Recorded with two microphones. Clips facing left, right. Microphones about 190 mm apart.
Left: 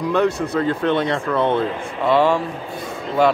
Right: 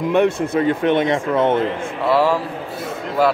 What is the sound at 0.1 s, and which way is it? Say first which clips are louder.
Speech: right 2 dB; 25° right (ahead or behind).